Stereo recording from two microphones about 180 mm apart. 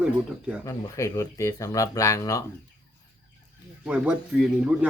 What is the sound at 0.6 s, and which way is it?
Speech, 15° left (ahead or behind).